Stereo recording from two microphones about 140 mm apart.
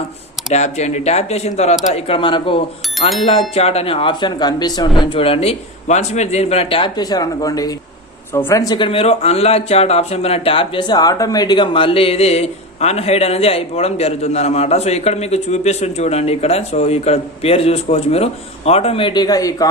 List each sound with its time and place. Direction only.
0.5 s speech: 55° left (ahead or behind)
2.0 s a man's voice: 40° left (ahead or behind)